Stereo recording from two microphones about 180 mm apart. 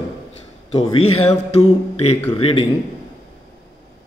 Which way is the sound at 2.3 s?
30° left (ahead or behind).